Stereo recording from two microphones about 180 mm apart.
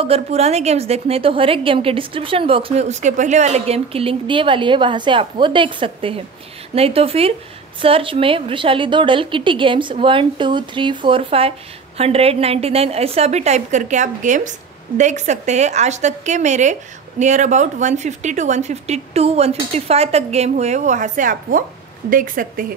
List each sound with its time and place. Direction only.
0.0 s a woman's voice: 35° right (ahead or behind); by 22.7 s 50° right (ahead or behind)